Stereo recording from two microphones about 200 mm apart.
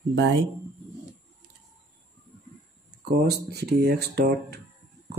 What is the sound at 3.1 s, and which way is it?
Speech, 45° right (ahead or behind).